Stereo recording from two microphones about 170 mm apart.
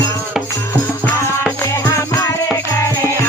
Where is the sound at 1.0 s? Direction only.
10° left (ahead or behind).